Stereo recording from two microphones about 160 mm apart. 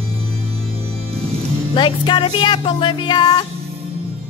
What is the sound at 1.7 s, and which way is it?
Music, 30° left (ahead or behind).